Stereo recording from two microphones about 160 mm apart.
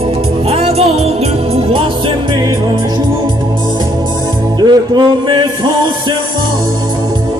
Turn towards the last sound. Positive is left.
turn(degrees=-25)  # may be behind; listen again after turning